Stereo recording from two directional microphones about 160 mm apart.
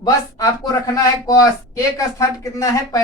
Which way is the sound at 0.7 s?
20° left (ahead or behind).